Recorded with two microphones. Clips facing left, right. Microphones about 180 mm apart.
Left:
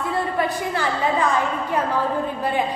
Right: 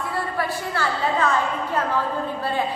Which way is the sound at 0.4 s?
15° left (ahead or behind).